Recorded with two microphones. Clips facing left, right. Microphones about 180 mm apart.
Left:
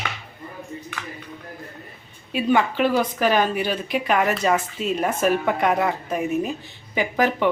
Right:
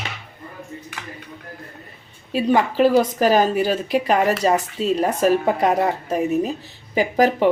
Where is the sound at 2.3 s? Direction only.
35° right (ahead or behind).